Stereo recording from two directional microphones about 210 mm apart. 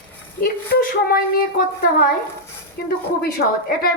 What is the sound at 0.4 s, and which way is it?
A woman's voice, 45° left (ahead or behind).